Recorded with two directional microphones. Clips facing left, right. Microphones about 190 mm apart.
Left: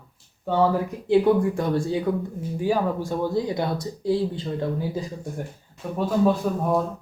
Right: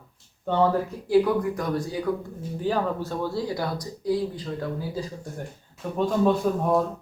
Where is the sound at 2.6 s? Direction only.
10° left (ahead or behind).